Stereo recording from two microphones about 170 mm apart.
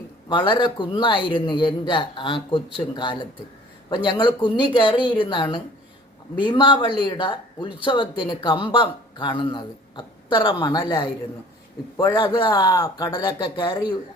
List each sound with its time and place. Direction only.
0.3 s speech: 30° left (ahead or behind)